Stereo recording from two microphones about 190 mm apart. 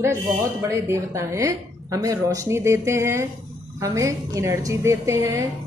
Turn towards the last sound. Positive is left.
turn(degrees=-15)  # may be behind; listen again after turning